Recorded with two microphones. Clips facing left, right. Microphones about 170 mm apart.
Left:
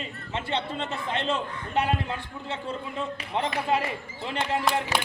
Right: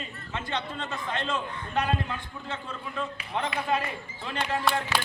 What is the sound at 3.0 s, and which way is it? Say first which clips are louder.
A man's voice: left 1 dB; 25° left (ahead or behind).